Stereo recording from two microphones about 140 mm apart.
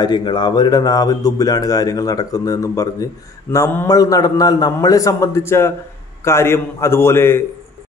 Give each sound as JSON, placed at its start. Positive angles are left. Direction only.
{"t": 0.0, "sound": "a man's voice", "side_deg": 30}